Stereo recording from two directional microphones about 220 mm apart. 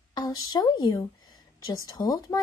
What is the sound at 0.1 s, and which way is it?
A woman's voice, 20° left (ahead or behind).